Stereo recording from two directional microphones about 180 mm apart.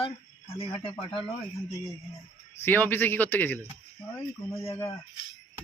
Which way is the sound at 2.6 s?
10° left (ahead or behind).